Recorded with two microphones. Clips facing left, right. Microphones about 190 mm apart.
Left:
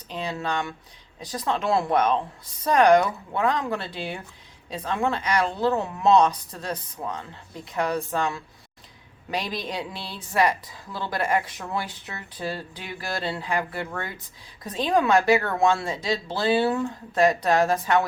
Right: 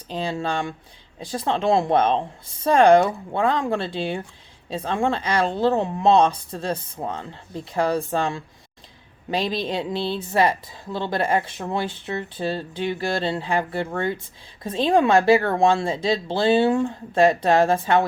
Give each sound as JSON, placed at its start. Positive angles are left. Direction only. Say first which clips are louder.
{"t": 0.1, "sound": "speech", "louder": "right 3 dB", "side_deg": -30}